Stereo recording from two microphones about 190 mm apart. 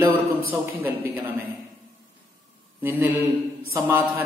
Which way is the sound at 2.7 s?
10° right (ahead or behind).